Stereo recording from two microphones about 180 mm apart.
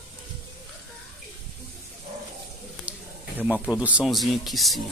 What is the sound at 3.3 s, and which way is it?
Speech, 10° right (ahead or behind).